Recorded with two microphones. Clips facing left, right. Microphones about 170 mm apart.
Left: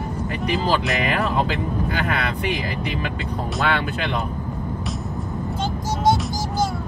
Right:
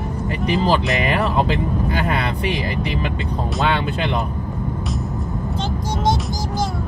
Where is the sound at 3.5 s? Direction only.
25° right (ahead or behind).